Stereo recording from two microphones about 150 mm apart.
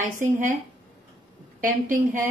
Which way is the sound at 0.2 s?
60° right (ahead or behind).